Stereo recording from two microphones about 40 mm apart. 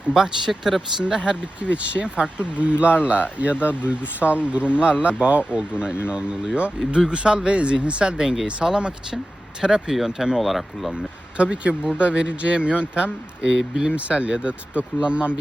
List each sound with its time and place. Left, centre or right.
0.1 s speech: centre
1.0 s speech: right
10.4 s speech: centre
11.3 s speech: right
13.9 s speech: right